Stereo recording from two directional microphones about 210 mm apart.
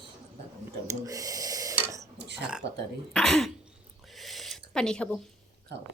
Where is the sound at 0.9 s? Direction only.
15° right (ahead or behind).